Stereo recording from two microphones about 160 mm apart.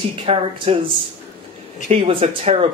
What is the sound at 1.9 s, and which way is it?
Speech, 35° right (ahead or behind).